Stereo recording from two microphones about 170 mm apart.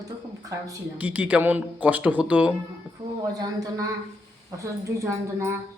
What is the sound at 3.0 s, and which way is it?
Speech, 25° right (ahead or behind).